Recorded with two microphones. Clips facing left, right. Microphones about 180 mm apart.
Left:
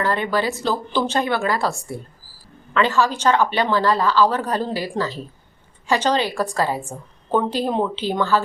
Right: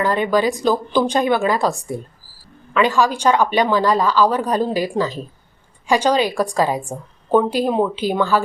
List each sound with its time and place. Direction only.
0.0 s a woman's voice: 15° right (ahead or behind)